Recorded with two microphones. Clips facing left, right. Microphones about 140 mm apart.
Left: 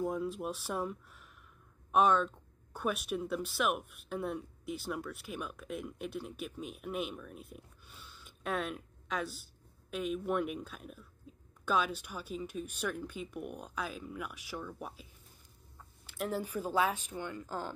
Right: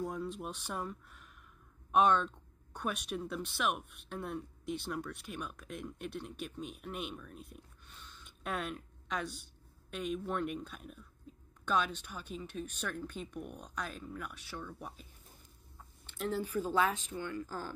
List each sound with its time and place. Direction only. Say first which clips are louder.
0.0 s speech: left 4 dB; 5° left (ahead or behind)
16.1 s speech: even; 10° left (ahead or behind)